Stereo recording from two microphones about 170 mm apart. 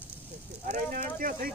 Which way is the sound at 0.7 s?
50° right (ahead or behind).